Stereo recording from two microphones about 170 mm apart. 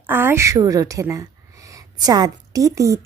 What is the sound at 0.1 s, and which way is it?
A woman's voice, 15° right (ahead or behind).